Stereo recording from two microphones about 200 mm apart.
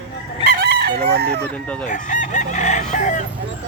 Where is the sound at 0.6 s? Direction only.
55° right (ahead or behind).